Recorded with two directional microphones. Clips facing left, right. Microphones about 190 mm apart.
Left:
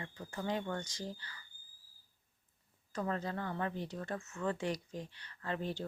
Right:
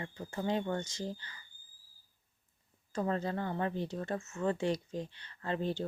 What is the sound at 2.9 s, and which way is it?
Speech, 30° right (ahead or behind).